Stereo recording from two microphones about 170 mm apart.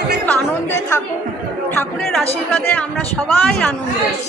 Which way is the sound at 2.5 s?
10° left (ahead or behind).